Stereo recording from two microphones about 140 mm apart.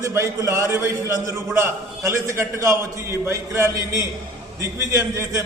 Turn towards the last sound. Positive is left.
turn(degrees=-25)  # may be behind; listen again after turning